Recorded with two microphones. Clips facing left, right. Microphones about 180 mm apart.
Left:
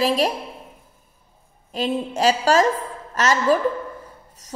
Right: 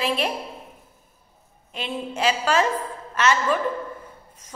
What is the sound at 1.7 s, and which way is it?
A woman's voice, 40° left (ahead or behind).